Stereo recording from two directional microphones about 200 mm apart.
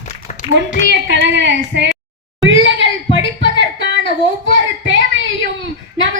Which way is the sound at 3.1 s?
70° right (ahead or behind).